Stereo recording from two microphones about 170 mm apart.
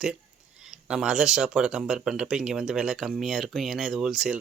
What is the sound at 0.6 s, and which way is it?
Speech, 5° right (ahead or behind).